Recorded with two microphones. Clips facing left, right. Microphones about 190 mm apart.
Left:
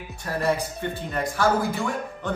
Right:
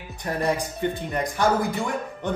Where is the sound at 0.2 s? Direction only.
15° right (ahead or behind).